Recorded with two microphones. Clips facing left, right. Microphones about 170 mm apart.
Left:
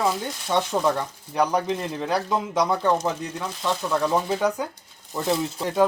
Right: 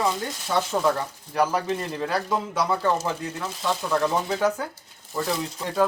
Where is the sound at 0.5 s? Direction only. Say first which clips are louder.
Left 1 dB; 20° left (ahead or behind).